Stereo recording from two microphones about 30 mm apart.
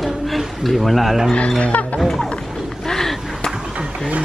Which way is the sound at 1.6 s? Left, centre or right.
Left.